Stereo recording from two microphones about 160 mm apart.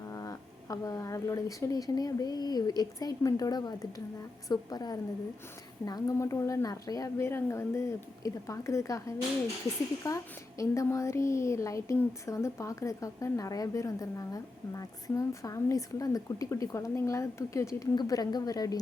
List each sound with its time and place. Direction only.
0.1 s speech: 20° left (ahead or behind)